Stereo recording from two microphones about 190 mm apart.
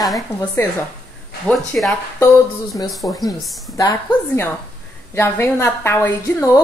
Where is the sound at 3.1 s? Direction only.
20° left (ahead or behind).